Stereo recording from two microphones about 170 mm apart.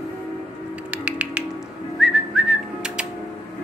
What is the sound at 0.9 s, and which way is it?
Music, 5° right (ahead or behind).